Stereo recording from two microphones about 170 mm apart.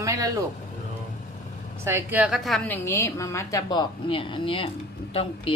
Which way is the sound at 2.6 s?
15° left (ahead or behind).